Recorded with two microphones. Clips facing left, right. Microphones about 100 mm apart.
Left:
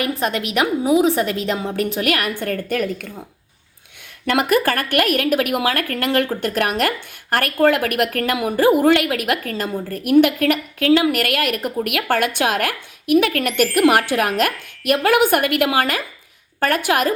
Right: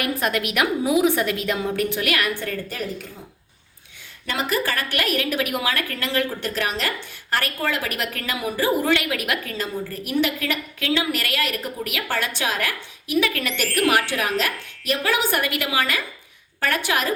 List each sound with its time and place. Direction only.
0.0 s a woman's voice: 30° left (ahead or behind); by 3.1 s 65° left (ahead or behind)
4.3 s a woman's voice: 60° left (ahead or behind)